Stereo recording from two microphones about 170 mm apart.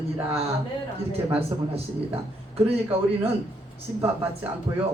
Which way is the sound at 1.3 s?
35° right (ahead or behind).